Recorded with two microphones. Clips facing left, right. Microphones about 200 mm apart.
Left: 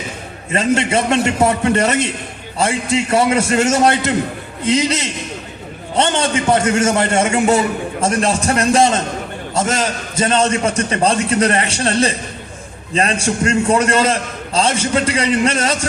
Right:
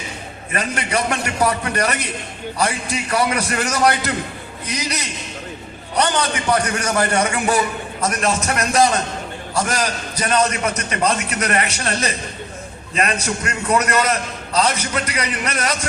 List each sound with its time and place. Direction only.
0.5 s a man's voice: 25° left (ahead or behind)